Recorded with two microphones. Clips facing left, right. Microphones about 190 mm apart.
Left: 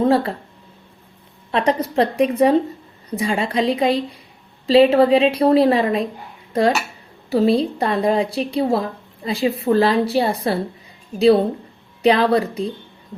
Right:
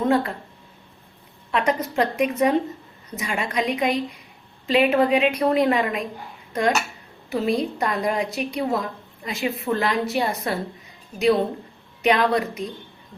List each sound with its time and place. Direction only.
0.0 s speech: 30° left (ahead or behind)
1.5 s a woman's voice: 35° left (ahead or behind)